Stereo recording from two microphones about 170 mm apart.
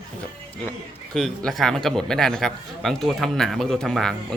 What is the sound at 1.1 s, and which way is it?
A man's voice, centre (ahead or behind).